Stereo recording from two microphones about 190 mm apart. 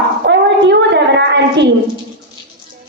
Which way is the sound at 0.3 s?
65° right (ahead or behind).